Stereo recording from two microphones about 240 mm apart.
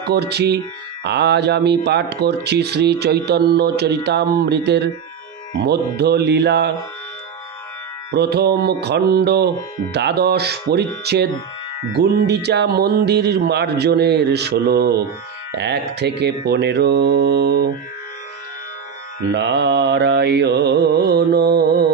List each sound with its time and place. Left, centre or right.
0.1 s speech: right
8.1 s speech: right
12.0 s speech: right
19.3 s speech: right